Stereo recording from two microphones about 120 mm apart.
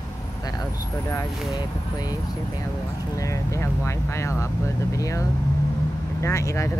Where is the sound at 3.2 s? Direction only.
25° left (ahead or behind).